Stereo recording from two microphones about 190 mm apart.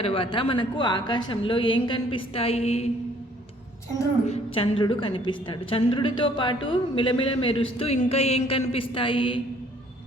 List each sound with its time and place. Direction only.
0.0 s a woman's voice: 30° left (ahead or behind)
4.3 s a woman's voice: 30° left (ahead or behind)